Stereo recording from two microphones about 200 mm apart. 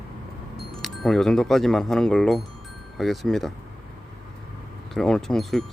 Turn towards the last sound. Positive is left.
turn(degrees=0)  # may be behind; listen again after turning